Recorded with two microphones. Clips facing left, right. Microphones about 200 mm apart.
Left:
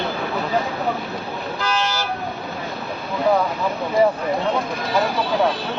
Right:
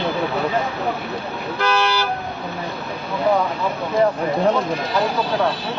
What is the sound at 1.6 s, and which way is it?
Toot, 65° right (ahead or behind).